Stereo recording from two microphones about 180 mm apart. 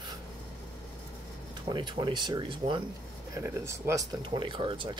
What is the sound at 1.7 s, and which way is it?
Speech, 25° right (ahead or behind).